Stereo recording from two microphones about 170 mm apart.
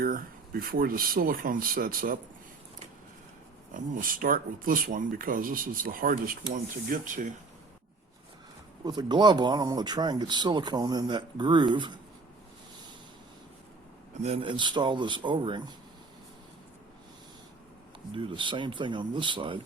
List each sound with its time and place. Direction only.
0.0 s speech: 60° right (ahead or behind)
3.8 s speech: 55° right (ahead or behind)
8.8 s speech: 25° right (ahead or behind)
14.2 s speech: 35° right (ahead or behind)
18.1 s speech: 30° right (ahead or behind)